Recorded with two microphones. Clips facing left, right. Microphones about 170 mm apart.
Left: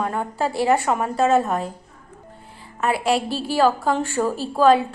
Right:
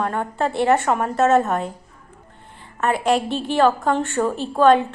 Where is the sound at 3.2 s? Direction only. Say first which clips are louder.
Right 2 dB; 35° left (ahead or behind).